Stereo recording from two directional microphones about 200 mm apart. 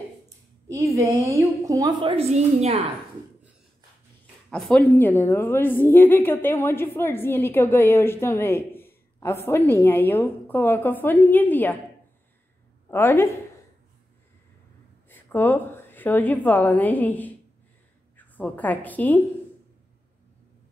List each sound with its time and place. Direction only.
0.7 s a woman's voice: 15° right (ahead or behind); by 2.8 s 30° right (ahead or behind)
4.5 s a woman's voice: 5° left (ahead or behind)
12.9 s a woman's voice: 10° left (ahead or behind)
15.0 s a woman's voice: 10° left (ahead or behind)